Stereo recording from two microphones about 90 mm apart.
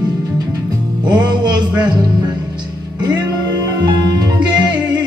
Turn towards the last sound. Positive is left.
turn(degrees=-55)  # may be behind; listen again after turning